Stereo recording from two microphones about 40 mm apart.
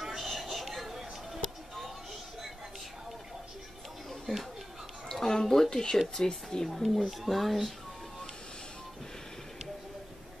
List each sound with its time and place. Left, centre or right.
0.0 s a sound: centre
5.0 s music: centre
6.1 s speech: centre
6.7 s speech: centre